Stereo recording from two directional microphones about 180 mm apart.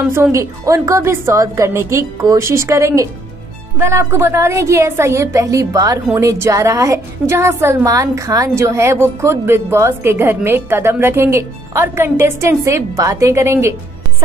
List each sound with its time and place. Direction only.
0.1 s a woman's voice: 15° right (ahead or behind)